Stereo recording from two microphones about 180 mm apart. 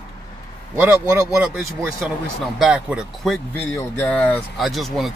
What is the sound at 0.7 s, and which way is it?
Speech, 15° right (ahead or behind).